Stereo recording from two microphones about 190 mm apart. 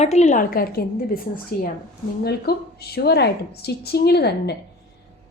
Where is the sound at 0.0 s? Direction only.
35° left (ahead or behind).